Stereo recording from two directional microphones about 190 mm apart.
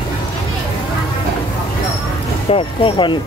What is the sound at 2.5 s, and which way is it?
Speech, 25° left (ahead or behind).